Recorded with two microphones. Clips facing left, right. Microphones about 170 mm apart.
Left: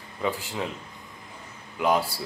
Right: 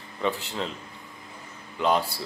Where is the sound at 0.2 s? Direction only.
10° left (ahead or behind).